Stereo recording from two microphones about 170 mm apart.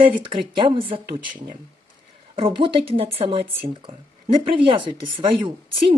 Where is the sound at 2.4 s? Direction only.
30° right (ahead or behind).